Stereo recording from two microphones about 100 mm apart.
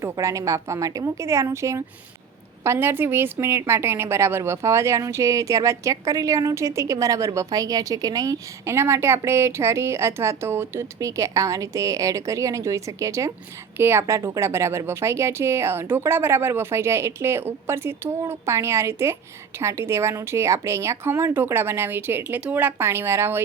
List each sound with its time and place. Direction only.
0.0 s a woman's voice: 30° right (ahead or behind)